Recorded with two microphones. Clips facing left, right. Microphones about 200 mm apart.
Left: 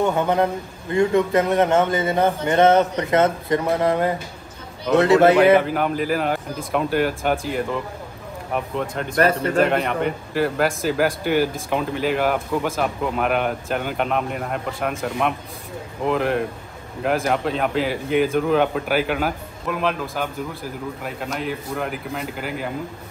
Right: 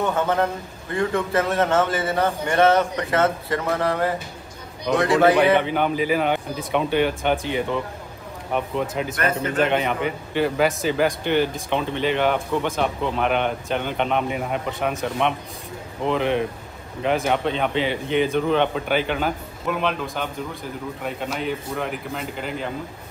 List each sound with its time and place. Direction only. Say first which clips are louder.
0.0 s a man's voice: left 2 dB; 15° left (ahead or behind)
5.4 s a man's voice: left 3 dB; centre (ahead or behind)